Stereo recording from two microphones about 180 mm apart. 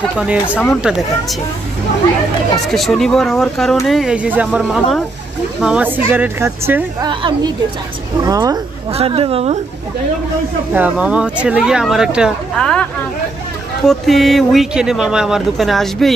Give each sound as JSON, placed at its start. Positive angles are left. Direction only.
{"t": 0.2, "sound": "speech", "side_deg": -5}
{"t": 2.6, "sound": "a woman's voice", "side_deg": 0}
{"t": 7.1, "sound": "a woman's voice", "side_deg": -25}
{"t": 8.9, "sound": "a woman's voice", "side_deg": -30}
{"t": 10.7, "sound": "speech", "side_deg": -10}
{"t": 13.8, "sound": "speech", "side_deg": 0}